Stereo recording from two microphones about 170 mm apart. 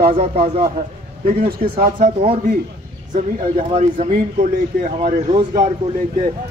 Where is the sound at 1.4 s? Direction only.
55° right (ahead or behind).